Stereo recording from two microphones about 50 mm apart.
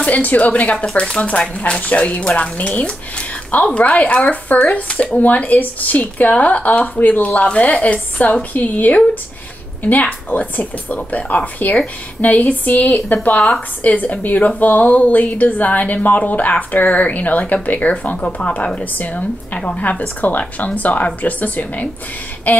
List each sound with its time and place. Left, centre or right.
0.0 s speech: left